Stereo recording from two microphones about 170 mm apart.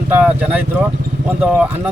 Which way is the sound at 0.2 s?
5° right (ahead or behind).